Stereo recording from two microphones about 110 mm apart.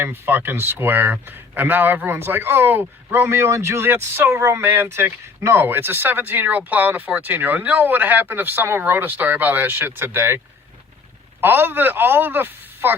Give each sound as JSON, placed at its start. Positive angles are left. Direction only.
{"t": 0.0, "sound": "speech", "side_deg": -20}